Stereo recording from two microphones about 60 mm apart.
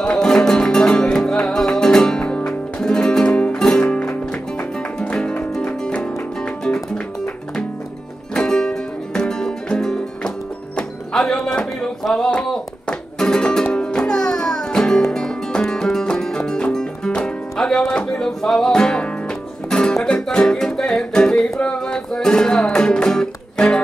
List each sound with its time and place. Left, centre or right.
0.0 s music: centre
8.4 s music: centre